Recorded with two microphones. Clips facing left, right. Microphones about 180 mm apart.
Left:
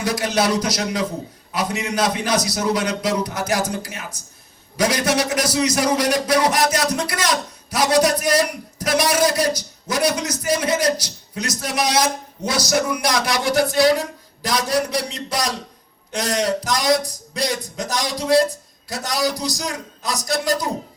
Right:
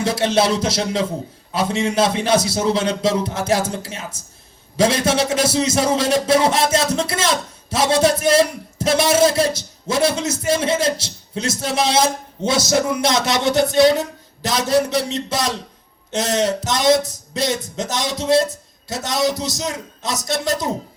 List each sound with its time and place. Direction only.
0.0 s a man's voice: 25° right (ahead or behind)